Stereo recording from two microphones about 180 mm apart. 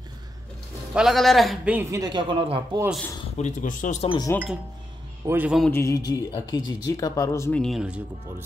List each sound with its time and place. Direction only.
0.9 s a man's voice: centre (ahead or behind); by 2.8 s 30° right (ahead or behind)
3.3 s speech: 40° left (ahead or behind)
4.3 s speech: 15° left (ahead or behind)
5.2 s a man's voice: 10° right (ahead or behind)
5.7 s speech: 15° left (ahead or behind)
7.6 s speech: 5° right (ahead or behind)